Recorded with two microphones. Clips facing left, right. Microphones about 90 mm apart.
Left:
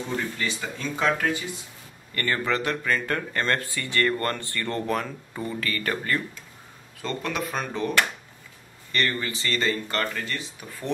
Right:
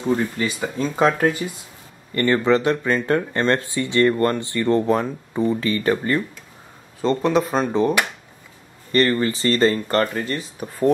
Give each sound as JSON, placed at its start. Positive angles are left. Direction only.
{"t": 0.4, "sound": "speech", "side_deg": -30}
{"t": 8.9, "sound": "speech", "side_deg": -35}